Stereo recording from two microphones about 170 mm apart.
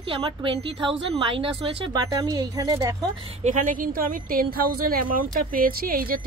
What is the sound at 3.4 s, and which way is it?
A woman's voice, 50° right (ahead or behind).